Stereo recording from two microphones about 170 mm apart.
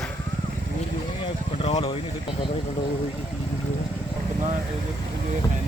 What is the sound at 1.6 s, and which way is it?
Speech, 30° left (ahead or behind).